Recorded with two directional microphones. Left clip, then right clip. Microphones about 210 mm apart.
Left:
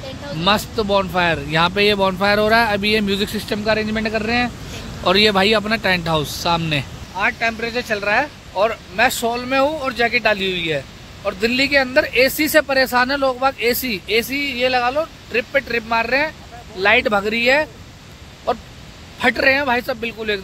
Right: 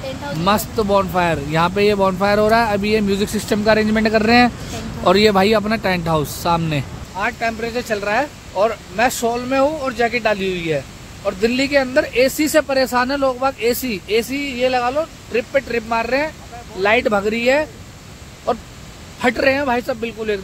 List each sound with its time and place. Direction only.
0.4 s speech: 5° right (ahead or behind)
3.3 s speech: 20° right (ahead or behind)
5.0 s speech: 10° right (ahead or behind)
7.2 s speech: 5° left (ahead or behind)